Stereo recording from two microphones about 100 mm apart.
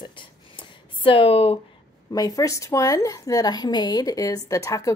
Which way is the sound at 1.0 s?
65° left (ahead or behind).